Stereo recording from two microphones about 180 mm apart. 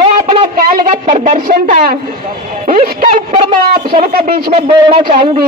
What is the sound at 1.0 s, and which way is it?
Speech, 35° right (ahead or behind).